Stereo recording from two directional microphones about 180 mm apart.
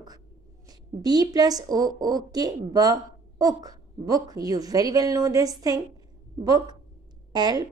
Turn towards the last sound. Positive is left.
turn(degrees=-25)  # may be behind; listen again after turning